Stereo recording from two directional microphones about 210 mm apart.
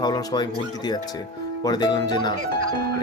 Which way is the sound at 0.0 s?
20° left (ahead or behind).